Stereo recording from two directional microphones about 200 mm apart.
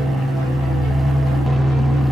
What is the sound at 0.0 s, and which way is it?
Vehicle, centre (ahead or behind).